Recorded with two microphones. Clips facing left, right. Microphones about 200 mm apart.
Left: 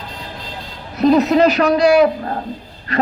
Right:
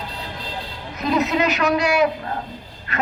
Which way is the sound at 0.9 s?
35° left (ahead or behind).